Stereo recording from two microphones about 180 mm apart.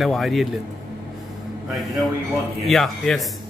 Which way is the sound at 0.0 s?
Centre (ahead or behind).